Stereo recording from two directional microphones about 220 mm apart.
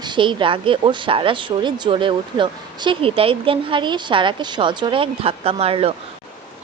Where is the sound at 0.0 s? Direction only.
20° right (ahead or behind).